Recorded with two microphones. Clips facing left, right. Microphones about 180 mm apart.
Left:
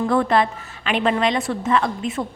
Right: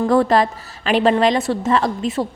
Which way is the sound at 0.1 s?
40° right (ahead or behind).